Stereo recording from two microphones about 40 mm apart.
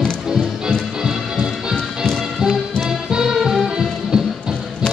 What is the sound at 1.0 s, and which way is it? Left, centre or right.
Music, centre.